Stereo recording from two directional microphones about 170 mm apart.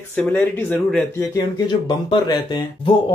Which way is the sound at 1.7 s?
25° left (ahead or behind).